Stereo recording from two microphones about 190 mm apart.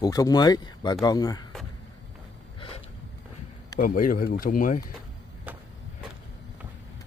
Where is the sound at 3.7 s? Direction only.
45° left (ahead or behind).